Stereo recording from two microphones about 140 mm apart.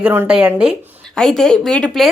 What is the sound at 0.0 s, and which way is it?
Speech, 15° right (ahead or behind).